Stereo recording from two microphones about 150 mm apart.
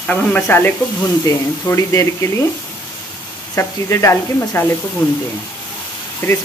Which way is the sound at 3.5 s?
20° left (ahead or behind).